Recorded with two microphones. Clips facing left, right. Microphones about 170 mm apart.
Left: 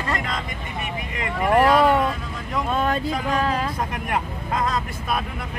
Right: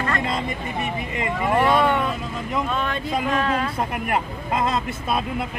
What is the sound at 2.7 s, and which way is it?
Speech, 40° left (ahead or behind).